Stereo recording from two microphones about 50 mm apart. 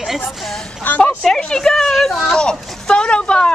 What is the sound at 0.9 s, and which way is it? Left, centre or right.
Speech, left.